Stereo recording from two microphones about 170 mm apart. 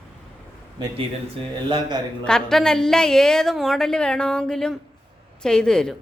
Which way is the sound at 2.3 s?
5° left (ahead or behind).